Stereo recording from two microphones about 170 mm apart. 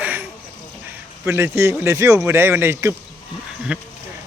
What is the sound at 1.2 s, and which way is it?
Speech, 15° right (ahead or behind).